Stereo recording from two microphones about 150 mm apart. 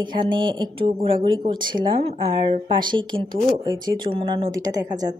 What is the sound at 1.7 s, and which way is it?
Speech, 35° right (ahead or behind).